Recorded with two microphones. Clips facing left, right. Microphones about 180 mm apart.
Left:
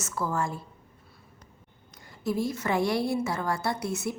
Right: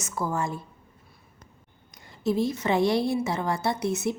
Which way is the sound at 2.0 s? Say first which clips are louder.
Right 4 dB; 25° right (ahead or behind).